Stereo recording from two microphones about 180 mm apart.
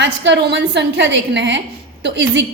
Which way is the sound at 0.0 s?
75° right (ahead or behind).